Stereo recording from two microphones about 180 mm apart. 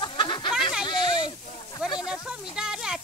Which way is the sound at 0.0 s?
25° left (ahead or behind).